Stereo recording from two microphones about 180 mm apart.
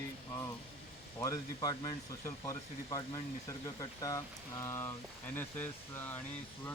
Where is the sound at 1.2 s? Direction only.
20° left (ahead or behind).